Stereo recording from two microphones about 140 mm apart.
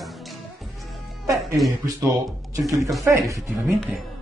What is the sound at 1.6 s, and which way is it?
Speech, centre (ahead or behind).